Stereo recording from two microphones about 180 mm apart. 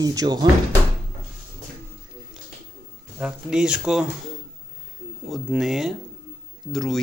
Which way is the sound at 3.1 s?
5° right (ahead or behind).